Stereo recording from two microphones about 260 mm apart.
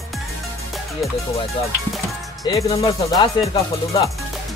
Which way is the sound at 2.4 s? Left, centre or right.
Centre.